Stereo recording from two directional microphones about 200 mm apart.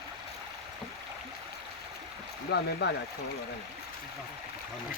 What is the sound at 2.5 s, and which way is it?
Speech, 60° left (ahead or behind).